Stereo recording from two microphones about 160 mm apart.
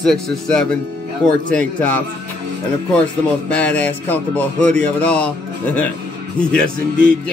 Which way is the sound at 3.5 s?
10° left (ahead or behind).